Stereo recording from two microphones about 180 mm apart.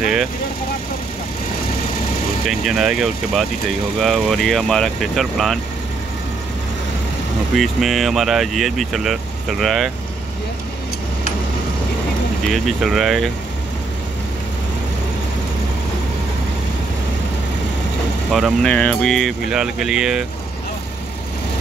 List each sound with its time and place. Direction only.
0.0 s speech: centre (ahead or behind)
2.4 s speech: centre (ahead or behind)
7.5 s speech: centre (ahead or behind)
12.4 s speech: centre (ahead or behind)
18.3 s speech: centre (ahead or behind)